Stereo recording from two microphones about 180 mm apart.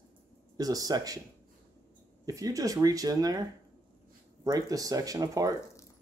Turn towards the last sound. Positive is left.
turn(degrees=-20)  # may be behind; listen again after turning